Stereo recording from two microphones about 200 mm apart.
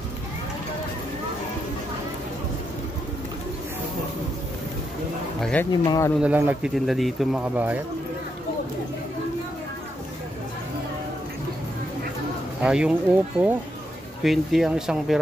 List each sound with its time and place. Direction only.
5.4 s speech: 5° left (ahead or behind)
5.7 s speech: 15° left (ahead or behind)
6.2 s speech: 10° right (ahead or behind)
12.6 s speech: 5° right (ahead or behind)